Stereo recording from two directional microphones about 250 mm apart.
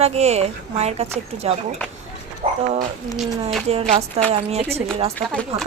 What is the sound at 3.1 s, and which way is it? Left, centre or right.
Speech, centre.